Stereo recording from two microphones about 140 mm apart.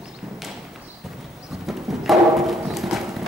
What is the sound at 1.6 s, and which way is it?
Music, centre (ahead or behind).